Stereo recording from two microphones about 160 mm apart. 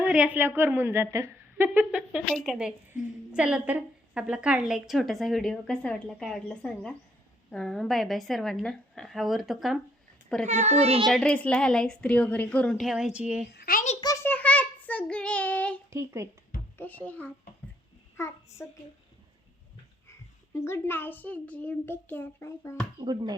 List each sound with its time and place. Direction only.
0.0 s a woman's voice: 5° right (ahead or behind)
10.4 s a child's voice: 45° right (ahead or behind)
11.0 s a woman's voice: 5° left (ahead or behind)
13.5 s a child's voice: 70° left (ahead or behind)
14.0 s child singing: 20° left (ahead or behind)
15.9 s a woman's voice: 15° right (ahead or behind)
16.7 s a child's voice: 10° left (ahead or behind)
20.1 s a child's voice: 15° left (ahead or behind)
23.0 s speech: 25° right (ahead or behind)